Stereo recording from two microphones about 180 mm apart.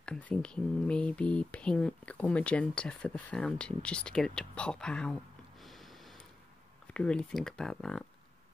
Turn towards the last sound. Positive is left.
turn(degrees=5)  # may be behind; listen again after turning